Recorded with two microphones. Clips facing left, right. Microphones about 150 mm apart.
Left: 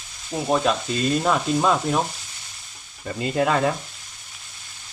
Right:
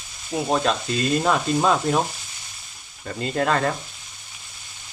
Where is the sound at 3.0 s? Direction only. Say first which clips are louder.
Left 1 dB; 10° left (ahead or behind).